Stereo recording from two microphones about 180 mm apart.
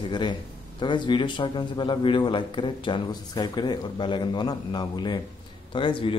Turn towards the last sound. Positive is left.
turn(degrees=30)  # may be behind; listen again after turning